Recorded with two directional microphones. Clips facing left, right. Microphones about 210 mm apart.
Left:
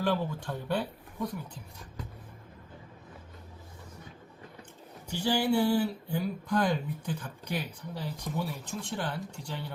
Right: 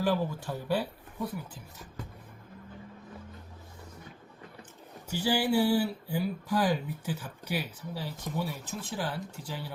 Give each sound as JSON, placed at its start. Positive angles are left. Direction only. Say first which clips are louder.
{"t": 0.0, "sound": "speech", "louder": "right 1 dB", "side_deg": -5}
{"t": 5.0, "sound": "speech", "louder": "even", "side_deg": -5}